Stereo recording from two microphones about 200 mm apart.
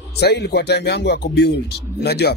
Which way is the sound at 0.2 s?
55° left (ahead or behind).